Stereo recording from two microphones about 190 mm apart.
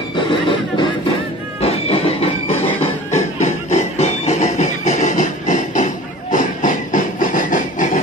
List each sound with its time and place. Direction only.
0.1 s music: 25° left (ahead or behind); by 5.9 s 40° left (ahead or behind)
6.3 s train: 40° left (ahead or behind)